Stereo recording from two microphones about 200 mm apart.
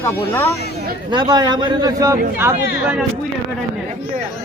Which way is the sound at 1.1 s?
20° right (ahead or behind).